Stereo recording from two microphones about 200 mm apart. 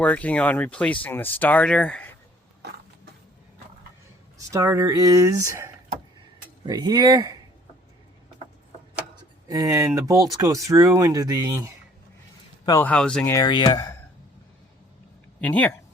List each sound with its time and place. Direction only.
0.0 s speech: 5° left (ahead or behind)
4.4 s speech: 15° right (ahead or behind)
9.5 s speech: 15° right (ahead or behind)
12.6 s speech: 10° left (ahead or behind)
13.3 s speech: 20° left (ahead or behind)
15.4 s speech: 5° left (ahead or behind)